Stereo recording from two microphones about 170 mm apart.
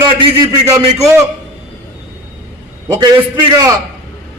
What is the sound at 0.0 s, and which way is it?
Speech, 25° right (ahead or behind).